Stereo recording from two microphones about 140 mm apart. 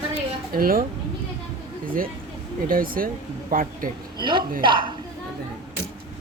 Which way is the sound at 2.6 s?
90° right.